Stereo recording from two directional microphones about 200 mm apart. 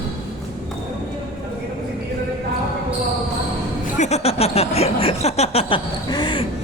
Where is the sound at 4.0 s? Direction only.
35° left (ahead or behind).